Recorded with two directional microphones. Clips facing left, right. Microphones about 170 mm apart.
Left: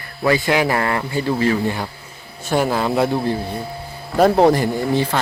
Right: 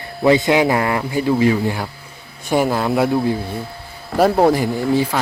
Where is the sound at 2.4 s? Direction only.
15° right (ahead or behind).